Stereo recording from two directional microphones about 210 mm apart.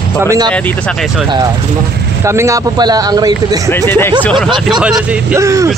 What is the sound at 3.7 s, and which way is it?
Speech, 10° left (ahead or behind).